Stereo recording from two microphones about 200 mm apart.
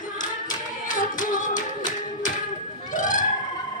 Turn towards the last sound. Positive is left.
turn(degrees=40)  # may be behind; listen again after turning